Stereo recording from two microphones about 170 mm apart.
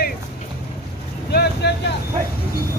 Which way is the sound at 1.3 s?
75° left (ahead or behind).